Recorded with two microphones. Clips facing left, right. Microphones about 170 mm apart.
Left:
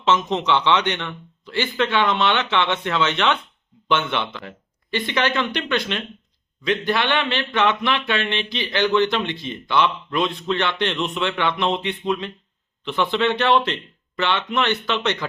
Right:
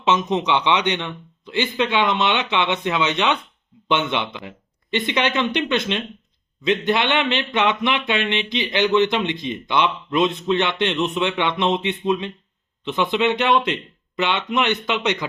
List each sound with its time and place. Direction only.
0.0 s a man's voice: 15° right (ahead or behind)